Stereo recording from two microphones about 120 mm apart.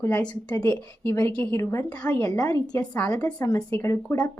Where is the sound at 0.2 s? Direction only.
10° left (ahead or behind).